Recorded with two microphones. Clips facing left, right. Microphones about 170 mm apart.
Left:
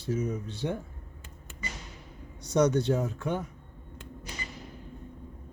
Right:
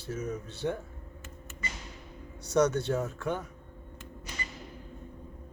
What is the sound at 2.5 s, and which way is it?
Speech, 15° left (ahead or behind).